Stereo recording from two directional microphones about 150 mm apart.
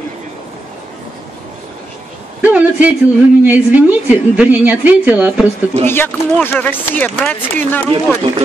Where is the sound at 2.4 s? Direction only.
10° right (ahead or behind).